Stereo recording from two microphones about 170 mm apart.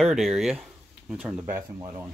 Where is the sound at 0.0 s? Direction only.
Centre (ahead or behind).